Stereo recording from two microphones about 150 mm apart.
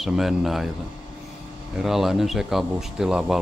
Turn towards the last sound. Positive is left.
turn(degrees=-5)  # may be behind; listen again after turning